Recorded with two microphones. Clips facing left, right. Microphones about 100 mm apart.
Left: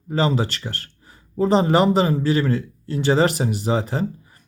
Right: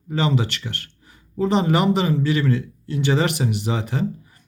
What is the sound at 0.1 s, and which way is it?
Speech, 35° left (ahead or behind).